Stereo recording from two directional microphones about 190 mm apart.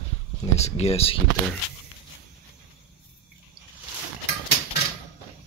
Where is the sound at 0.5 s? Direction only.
35° left (ahead or behind).